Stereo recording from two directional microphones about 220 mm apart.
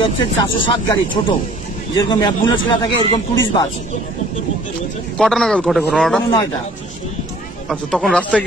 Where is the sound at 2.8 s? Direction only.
20° left (ahead or behind).